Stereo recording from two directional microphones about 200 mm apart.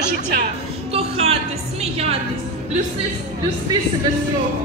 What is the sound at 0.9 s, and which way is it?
Speech, 30° right (ahead or behind).